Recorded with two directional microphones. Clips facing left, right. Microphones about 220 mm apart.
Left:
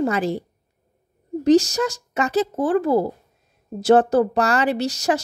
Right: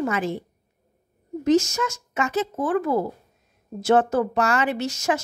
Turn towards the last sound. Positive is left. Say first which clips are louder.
# left 3 dB
turn(degrees=35)  # may be behind; listen again after turning